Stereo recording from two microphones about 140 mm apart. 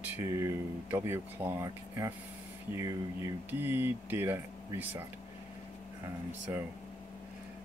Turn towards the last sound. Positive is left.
turn(degrees=-15)  # may be behind; listen again after turning